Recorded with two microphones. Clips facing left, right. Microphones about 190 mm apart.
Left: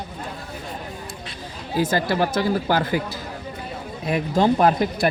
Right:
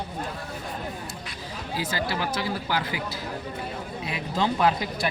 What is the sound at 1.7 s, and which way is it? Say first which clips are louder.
Speech: left 8 dB; 50° left (ahead or behind).